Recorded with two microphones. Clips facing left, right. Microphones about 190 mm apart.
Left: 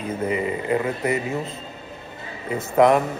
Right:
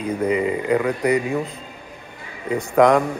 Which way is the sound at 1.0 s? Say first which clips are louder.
Right 4 dB; 25° left (ahead or behind).